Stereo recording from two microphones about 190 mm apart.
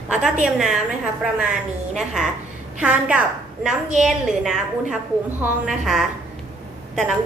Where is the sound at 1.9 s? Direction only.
5° right (ahead or behind).